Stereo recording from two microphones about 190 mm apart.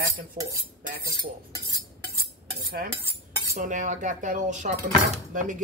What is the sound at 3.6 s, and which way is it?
Speech, 40° right (ahead or behind).